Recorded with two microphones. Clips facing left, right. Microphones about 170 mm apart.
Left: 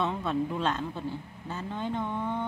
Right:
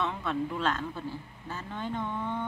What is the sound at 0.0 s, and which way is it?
Speech, 20° left (ahead or behind).